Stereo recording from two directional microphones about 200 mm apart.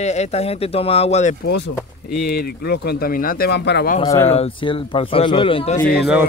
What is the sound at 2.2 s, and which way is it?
Speech, 50° left (ahead or behind).